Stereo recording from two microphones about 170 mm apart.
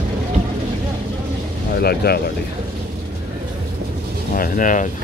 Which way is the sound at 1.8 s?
65° left (ahead or behind).